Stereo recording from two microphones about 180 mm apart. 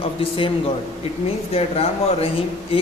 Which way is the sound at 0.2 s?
30° left (ahead or behind).